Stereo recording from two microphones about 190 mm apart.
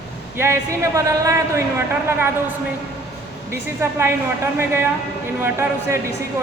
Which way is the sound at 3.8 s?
10° right (ahead or behind).